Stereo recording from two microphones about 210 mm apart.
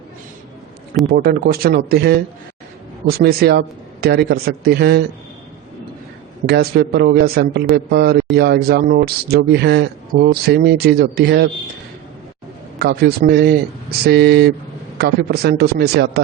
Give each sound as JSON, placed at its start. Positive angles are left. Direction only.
{"t": 1.1, "sound": "a man's voice", "side_deg": -45}
{"t": 6.4, "sound": "a man's voice", "side_deg": -50}
{"t": 12.8, "sound": "a man's voice", "side_deg": -50}